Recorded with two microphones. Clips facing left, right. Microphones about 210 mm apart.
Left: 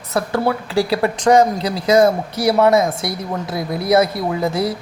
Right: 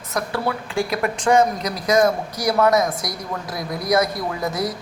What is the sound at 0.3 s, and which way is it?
Speech, 40° left (ahead or behind).